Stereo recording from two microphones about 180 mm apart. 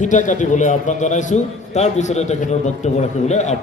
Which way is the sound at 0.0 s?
45° left (ahead or behind).